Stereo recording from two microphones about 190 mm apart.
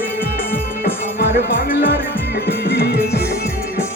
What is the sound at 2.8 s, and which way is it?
Music, 55° left (ahead or behind).